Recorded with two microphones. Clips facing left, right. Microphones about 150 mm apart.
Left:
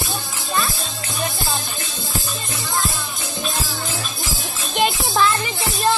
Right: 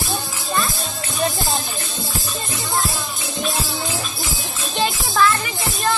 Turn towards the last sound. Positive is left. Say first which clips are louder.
# even
turn(degrees=20)  # may be behind; listen again after turning